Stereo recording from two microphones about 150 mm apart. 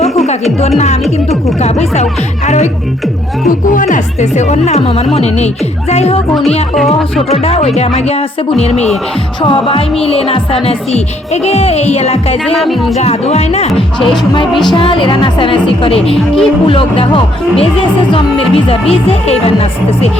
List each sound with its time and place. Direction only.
1.6 s speech: 45° left (ahead or behind)
3.4 s speech: 60° left (ahead or behind); by 13.7 s 45° left (ahead or behind)
14.7 s speech: 35° left (ahead or behind)
16.1 s speech: 5° left (ahead or behind)
16.6 s speech: 35° left (ahead or behind)